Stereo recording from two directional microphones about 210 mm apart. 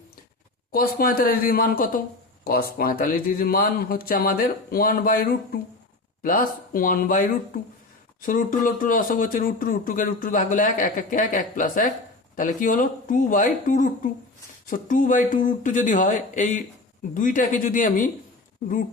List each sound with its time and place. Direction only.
0.7 s speech: 45° left (ahead or behind)